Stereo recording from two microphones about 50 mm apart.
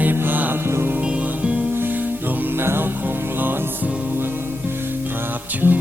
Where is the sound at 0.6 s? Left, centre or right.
Right.